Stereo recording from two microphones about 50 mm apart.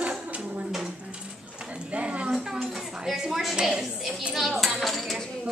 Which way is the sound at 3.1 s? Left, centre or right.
Centre.